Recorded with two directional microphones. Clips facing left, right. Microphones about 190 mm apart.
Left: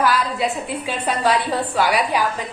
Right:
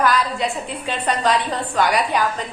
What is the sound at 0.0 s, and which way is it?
A woman's voice, 5° left (ahead or behind).